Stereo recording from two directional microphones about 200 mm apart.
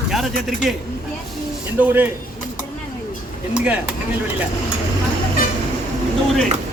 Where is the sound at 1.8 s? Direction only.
10° right (ahead or behind).